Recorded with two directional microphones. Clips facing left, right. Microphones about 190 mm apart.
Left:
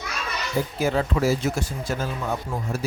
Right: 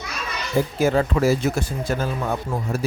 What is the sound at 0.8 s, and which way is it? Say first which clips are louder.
Speech: right 3 dB; 50° right (ahead or behind).